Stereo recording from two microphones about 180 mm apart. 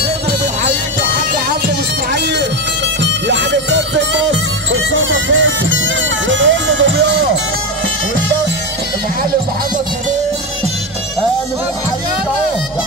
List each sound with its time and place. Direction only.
2.1 s music: 70° right (ahead or behind)
3.0 s music: 80° right